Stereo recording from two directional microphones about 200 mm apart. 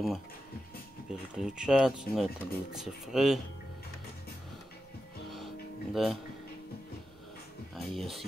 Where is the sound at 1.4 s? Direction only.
5° right (ahead or behind).